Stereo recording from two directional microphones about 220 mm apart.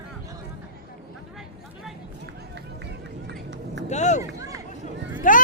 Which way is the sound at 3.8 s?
30° left (ahead or behind).